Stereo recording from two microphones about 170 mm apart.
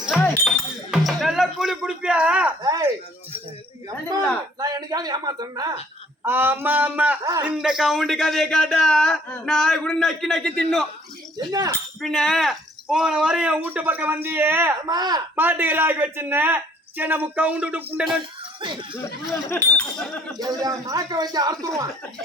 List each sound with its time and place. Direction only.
0.2 s music: centre (ahead or behind)
2.6 s music: 20° right (ahead or behind)
4.6 s a man's voice: 20° right (ahead or behind)
6.2 s a man's voice: 10° right (ahead or behind)
11.9 s speech: centre (ahead or behind)
14.8 s a man's voice: 25° right (ahead or behind)
15.4 s speech: 10° right (ahead or behind)
18.6 s a man's voice: 30° right (ahead or behind)
19.0 s speech: 15° left (ahead or behind)
20.4 s a man's voice: 20° right (ahead or behind)